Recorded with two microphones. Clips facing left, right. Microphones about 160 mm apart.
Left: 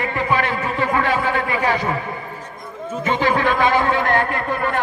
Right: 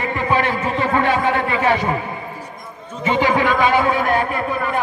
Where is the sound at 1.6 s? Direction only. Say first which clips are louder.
Right 3 dB; 20° right (ahead or behind).